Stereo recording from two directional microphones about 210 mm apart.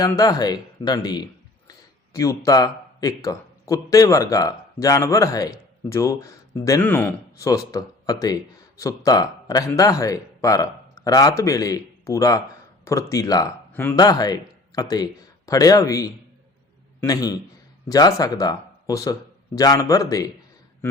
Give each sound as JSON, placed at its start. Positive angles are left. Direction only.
{"t": 0.0, "sound": "speech", "side_deg": 15}